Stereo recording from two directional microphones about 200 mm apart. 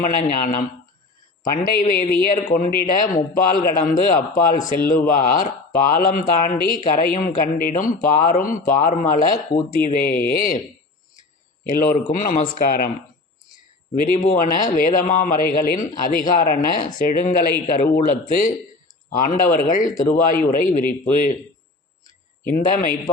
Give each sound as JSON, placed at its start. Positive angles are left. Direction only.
{"t": 0.0, "sound": "a man's voice", "side_deg": 40}
{"t": 11.7, "sound": "a man's voice", "side_deg": 40}
{"t": 14.3, "sound": "a man's voice", "side_deg": 40}
{"t": 22.4, "sound": "a man's voice", "side_deg": 45}